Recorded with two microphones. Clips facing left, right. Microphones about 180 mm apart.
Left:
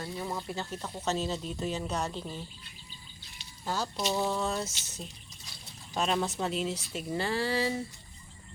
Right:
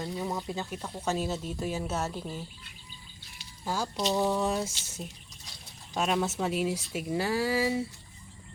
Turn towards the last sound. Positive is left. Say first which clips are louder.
# right 2 dB
turn(degrees=-10)  # may be behind; listen again after turning